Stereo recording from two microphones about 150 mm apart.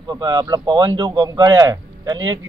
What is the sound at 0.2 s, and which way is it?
A man's voice, 30° right (ahead or behind).